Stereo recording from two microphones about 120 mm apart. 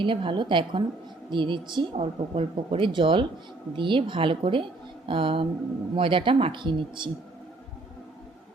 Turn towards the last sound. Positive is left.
turn(degrees=-40)  # may be behind; listen again after turning